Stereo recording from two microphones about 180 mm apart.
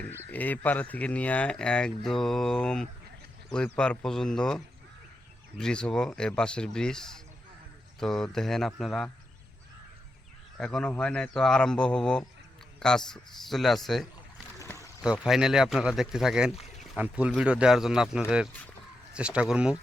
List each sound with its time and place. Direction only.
0.3 s a man's voice: 10° left (ahead or behind)
10.6 s a man's voice: 5° left (ahead or behind)
14.6 s a sound: 15° left (ahead or behind)
15.0 s a man's voice: 5° right (ahead or behind)